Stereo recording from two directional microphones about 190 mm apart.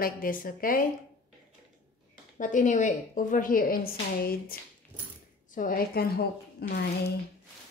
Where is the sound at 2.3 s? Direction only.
40° left (ahead or behind); by 6.8 s 55° left (ahead or behind).